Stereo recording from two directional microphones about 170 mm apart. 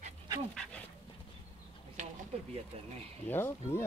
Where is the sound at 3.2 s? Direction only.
15° left (ahead or behind).